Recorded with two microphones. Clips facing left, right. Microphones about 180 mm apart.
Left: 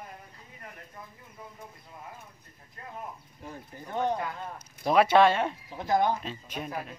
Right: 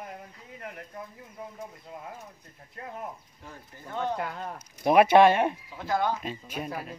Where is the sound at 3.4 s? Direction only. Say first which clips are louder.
Left 3 dB; 15° left (ahead or behind).